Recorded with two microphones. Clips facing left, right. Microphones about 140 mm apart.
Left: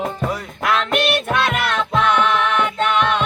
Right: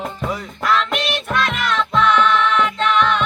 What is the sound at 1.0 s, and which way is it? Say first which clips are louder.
Music: left 3 dB; 55° left (ahead or behind).